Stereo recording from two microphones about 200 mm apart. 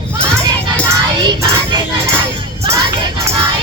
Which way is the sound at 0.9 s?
20° right (ahead or behind).